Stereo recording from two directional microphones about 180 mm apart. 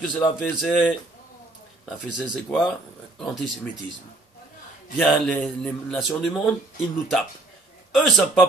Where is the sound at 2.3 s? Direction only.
Centre (ahead or behind).